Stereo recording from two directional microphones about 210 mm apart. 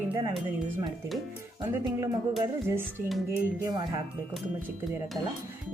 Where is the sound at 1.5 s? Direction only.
15° right (ahead or behind).